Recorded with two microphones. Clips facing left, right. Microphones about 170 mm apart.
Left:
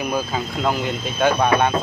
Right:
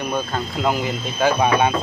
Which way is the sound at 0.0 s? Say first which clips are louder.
Left 1 dB; 5° left (ahead or behind).